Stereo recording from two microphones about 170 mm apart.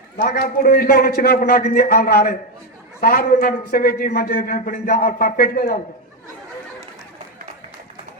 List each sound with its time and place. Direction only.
0.2 s a man's voice: 60° left (ahead or behind)